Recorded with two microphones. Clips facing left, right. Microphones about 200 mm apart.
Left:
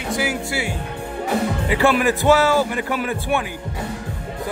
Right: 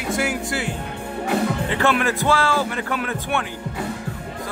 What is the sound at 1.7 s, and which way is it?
Speech, 10° left (ahead or behind).